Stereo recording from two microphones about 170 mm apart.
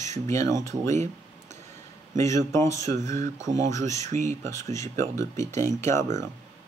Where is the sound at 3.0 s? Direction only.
45° right (ahead or behind).